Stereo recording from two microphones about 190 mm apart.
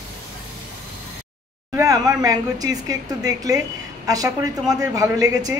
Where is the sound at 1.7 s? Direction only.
15° right (ahead or behind).